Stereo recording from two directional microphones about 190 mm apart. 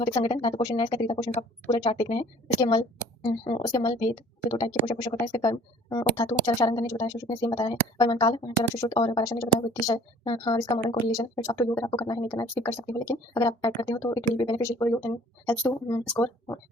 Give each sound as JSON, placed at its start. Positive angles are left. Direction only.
{"t": 0.0, "sound": "speech", "side_deg": 25}
{"t": 16.0, "sound": "speech", "side_deg": 10}